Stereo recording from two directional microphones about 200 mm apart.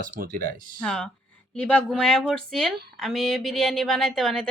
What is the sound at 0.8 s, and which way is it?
Speech, 5° left (ahead or behind).